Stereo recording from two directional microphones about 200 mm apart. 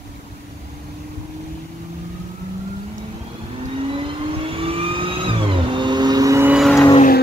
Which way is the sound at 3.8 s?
25° right (ahead or behind).